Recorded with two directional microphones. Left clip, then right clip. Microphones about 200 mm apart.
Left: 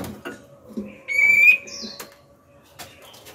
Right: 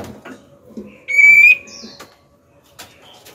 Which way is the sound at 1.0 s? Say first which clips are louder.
Right 7 dB; 10° right (ahead or behind).